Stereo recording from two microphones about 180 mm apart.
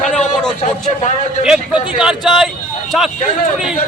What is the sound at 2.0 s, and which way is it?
Speech, 5° right (ahead or behind).